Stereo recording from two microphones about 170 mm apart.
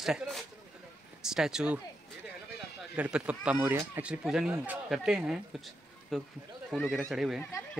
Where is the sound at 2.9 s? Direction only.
5° right (ahead or behind).